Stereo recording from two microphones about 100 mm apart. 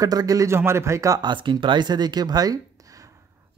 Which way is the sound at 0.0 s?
40° right (ahead or behind).